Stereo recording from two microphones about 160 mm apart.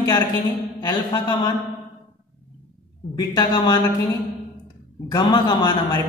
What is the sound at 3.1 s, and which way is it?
Speech, 25° left (ahead or behind).